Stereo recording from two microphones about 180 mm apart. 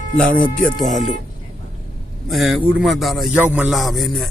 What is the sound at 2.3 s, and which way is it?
Speech, centre (ahead or behind).